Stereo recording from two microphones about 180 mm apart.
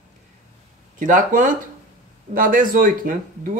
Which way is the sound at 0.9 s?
45° right (ahead or behind).